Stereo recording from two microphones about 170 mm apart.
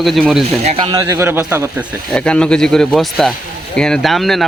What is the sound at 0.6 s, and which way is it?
Speech, 25° right (ahead or behind).